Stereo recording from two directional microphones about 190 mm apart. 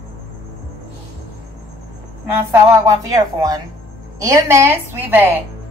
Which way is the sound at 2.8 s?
20° right (ahead or behind).